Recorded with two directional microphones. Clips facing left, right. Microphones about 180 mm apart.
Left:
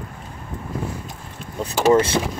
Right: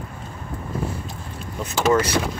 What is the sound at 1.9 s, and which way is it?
Speech, 25° left (ahead or behind).